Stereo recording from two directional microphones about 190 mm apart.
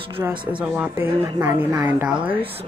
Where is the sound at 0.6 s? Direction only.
5° right (ahead or behind).